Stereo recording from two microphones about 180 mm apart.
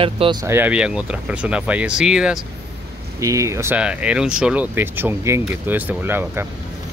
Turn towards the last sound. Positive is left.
turn(degrees=-10)  # may be behind; listen again after turning